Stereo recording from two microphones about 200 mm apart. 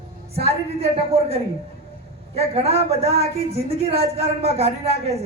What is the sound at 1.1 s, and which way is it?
A man's voice, 30° right (ahead or behind).